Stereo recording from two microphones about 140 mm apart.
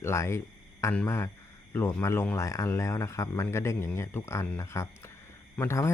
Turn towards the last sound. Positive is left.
turn(degrees=15)  # may be behind; listen again after turning